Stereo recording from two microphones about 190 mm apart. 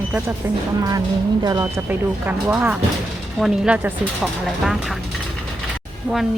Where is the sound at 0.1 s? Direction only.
10° right (ahead or behind).